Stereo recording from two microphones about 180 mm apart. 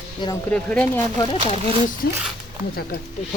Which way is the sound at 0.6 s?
10° left (ahead or behind).